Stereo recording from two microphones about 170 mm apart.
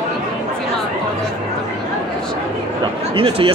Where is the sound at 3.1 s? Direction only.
35° right (ahead or behind).